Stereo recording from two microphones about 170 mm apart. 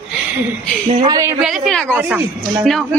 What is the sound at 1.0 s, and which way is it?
Speech, 20° right (ahead or behind).